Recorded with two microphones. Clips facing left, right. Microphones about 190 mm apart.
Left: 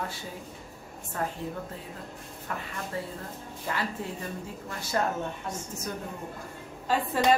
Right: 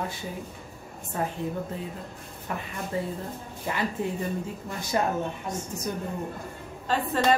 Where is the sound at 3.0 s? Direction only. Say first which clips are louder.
Right 8 dB; 20° right (ahead or behind).